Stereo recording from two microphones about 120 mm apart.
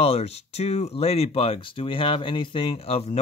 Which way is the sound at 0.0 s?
60° left (ahead or behind).